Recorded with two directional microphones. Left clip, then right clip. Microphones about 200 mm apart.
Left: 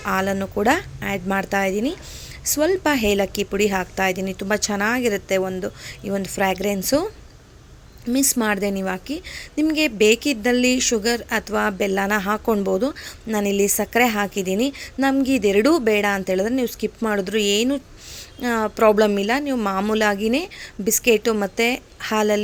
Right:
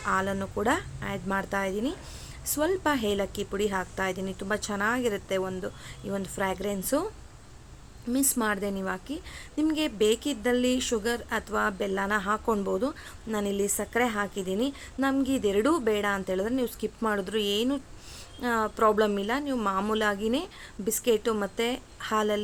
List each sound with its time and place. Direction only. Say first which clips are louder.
0.0 s a woman's voice: left 6 dB; 25° left (ahead or behind)
8.1 s a woman's voice: left 7 dB; 25° left (ahead or behind)